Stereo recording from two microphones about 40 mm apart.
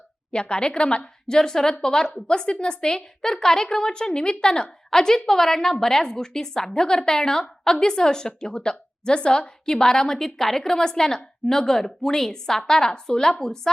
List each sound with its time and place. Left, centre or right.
0.3 s a woman's voice: left